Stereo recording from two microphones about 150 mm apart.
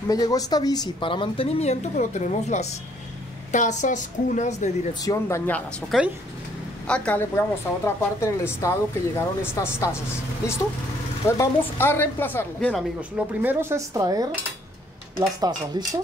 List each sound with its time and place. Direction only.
0.1 s a woman's voice: 25° left (ahead or behind); by 4.6 s 55° left (ahead or behind)
5.0 s speech: 25° left (ahead or behind)
5.5 s a woman's voice: 5° left (ahead or behind)
11.2 s a woman's voice: 15° left (ahead or behind)
13.4 s speech: 15° right (ahead or behind)